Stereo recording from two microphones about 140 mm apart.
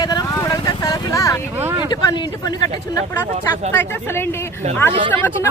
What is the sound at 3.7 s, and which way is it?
Speech, 15° left (ahead or behind).